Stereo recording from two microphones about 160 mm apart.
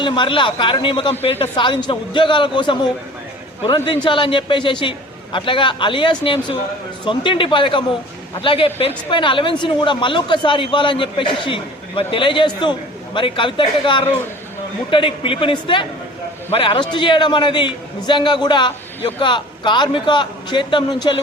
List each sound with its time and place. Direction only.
0.0 s a man's voice: 30° left (ahead or behind)